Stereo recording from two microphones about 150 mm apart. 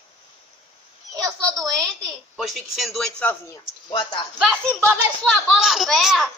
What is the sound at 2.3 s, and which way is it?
Speech, centre (ahead or behind).